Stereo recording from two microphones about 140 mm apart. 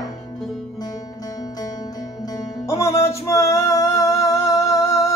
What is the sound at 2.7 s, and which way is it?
Music, 20° left (ahead or behind).